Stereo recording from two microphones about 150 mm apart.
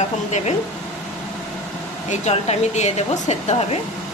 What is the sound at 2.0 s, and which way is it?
Speech, 45° left (ahead or behind).